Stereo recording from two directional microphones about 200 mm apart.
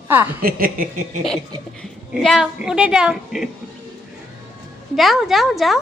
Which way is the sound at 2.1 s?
Centre (ahead or behind).